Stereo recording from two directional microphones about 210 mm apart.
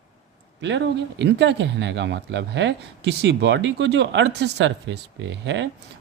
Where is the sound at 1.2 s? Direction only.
55° right (ahead or behind).